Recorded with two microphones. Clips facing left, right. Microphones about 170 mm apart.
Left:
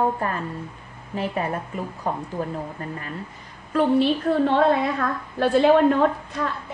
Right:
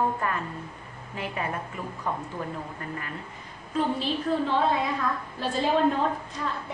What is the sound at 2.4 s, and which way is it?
Speech, 40° left (ahead or behind).